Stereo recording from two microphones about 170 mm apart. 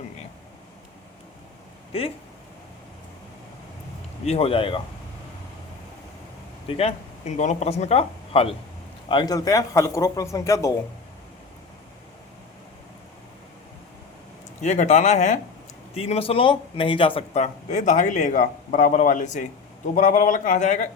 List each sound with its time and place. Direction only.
1.9 s speech: 35° left (ahead or behind)
4.3 s speech: 35° left (ahead or behind)
6.7 s speech: 35° left (ahead or behind)
9.0 s a man's voice: 25° left (ahead or behind)
14.6 s speech: 45° left (ahead or behind)